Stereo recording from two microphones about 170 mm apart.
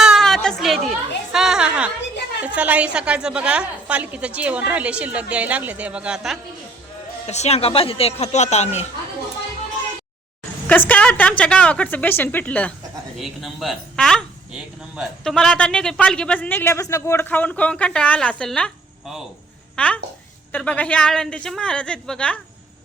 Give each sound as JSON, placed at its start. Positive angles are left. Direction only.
{"t": 0.0, "sound": "chatter", "side_deg": 0}
{"t": 2.6, "sound": "a woman's voice", "side_deg": -10}
{"t": 7.3, "sound": "speech", "side_deg": 40}
{"t": 10.7, "sound": "a woman's voice", "side_deg": 10}